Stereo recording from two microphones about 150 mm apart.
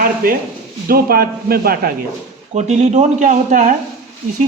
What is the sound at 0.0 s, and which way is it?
Speech, 70° right (ahead or behind).